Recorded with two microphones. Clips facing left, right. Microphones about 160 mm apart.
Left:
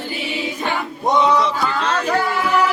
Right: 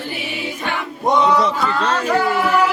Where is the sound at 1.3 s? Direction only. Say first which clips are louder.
Right 1 dB; centre (ahead or behind).